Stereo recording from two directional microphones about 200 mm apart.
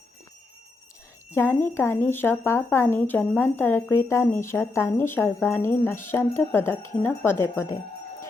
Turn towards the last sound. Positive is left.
turn(degrees=15)  # may be behind; listen again after turning